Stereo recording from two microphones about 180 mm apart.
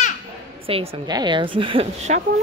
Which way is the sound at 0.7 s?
30° right (ahead or behind).